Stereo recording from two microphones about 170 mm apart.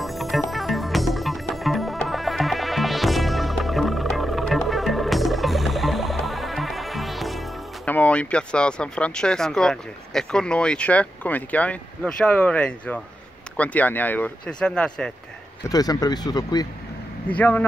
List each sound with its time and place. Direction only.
0.0 s music: centre (ahead or behind)
7.9 s speech: 10° left (ahead or behind)
15.7 s speech: 20° left (ahead or behind)
17.3 s speech: 10° left (ahead or behind)